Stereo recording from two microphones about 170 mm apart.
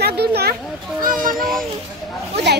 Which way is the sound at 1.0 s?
55° right (ahead or behind).